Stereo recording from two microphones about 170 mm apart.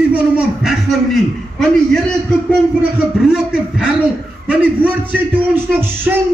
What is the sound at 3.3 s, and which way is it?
A man's voice, 5° right (ahead or behind).